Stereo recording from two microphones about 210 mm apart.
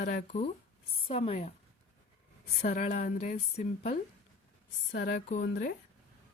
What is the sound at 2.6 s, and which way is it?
Speech, 35° left (ahead or behind).